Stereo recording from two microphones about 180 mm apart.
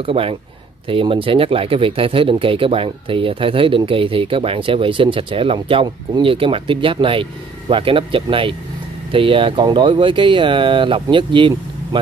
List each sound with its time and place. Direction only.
0.0 s speech: 30° right (ahead or behind)